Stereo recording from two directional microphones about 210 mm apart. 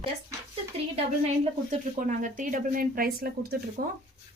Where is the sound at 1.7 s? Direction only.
40° right (ahead or behind).